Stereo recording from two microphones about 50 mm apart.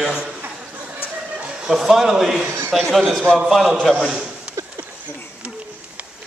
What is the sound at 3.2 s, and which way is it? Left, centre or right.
Speech, right.